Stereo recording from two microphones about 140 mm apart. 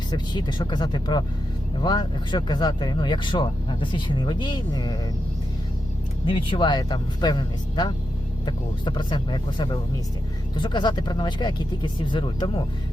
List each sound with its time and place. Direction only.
0.1 s speech: 30° left (ahead or behind)
6.2 s speech: 40° left (ahead or behind)